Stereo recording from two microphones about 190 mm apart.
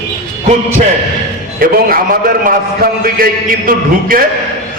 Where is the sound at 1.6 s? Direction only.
50° right (ahead or behind).